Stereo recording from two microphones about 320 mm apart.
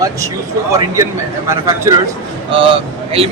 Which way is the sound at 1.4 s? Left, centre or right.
Centre.